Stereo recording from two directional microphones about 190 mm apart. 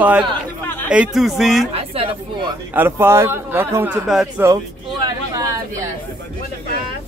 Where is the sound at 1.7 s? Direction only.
30° right (ahead or behind).